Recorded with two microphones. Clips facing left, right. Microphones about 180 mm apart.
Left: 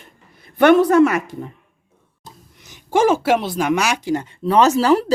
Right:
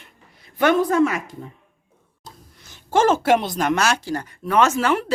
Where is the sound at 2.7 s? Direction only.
15° left (ahead or behind); by 5.1 s 35° left (ahead or behind).